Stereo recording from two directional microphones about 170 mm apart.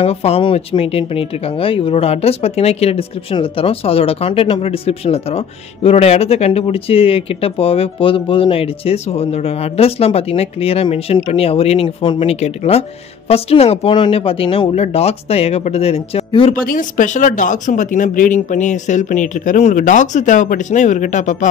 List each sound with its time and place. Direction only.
0.0 s speech: 35° left (ahead or behind)
16.5 s speech: 55° left (ahead or behind)